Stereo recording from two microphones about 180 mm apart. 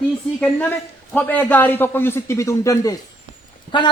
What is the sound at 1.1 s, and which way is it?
A man's voice, 10° left (ahead or behind).